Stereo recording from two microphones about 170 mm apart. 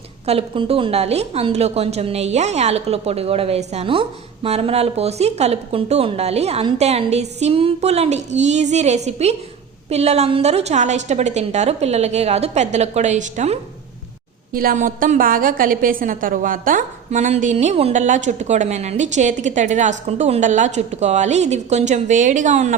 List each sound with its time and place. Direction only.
0.3 s speech: 35° right (ahead or behind)
14.5 s a woman's voice: 55° right (ahead or behind)